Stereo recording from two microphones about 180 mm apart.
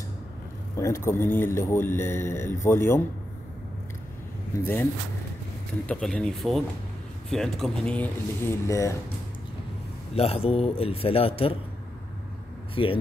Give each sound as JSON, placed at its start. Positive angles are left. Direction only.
{"t": 0.7, "sound": "speech", "side_deg": 15}
{"t": 5.9, "sound": "speech", "side_deg": 5}
{"t": 10.1, "sound": "a man's voice", "side_deg": 35}
{"t": 12.8, "sound": "speech", "side_deg": 30}